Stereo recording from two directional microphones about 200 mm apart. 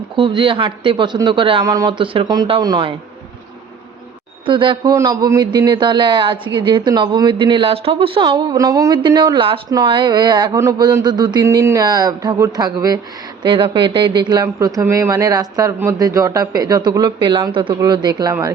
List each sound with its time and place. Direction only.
0.2 s a man's voice: 25° right (ahead or behind)
4.4 s a man's voice: 25° right (ahead or behind)